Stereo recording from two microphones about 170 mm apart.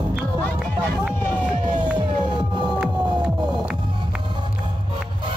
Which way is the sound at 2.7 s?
5° right (ahead or behind).